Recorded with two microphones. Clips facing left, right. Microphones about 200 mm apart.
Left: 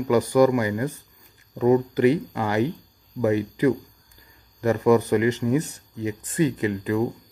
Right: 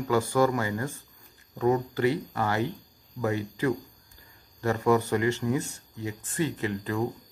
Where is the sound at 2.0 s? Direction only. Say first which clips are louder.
Left 6 dB; 15° left (ahead or behind).